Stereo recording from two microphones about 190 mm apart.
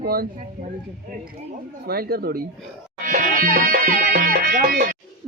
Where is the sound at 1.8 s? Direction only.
55° right (ahead or behind).